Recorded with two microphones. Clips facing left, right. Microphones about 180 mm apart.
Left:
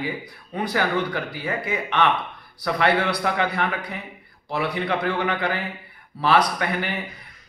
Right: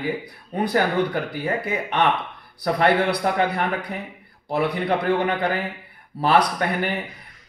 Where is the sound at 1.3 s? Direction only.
45° right (ahead or behind).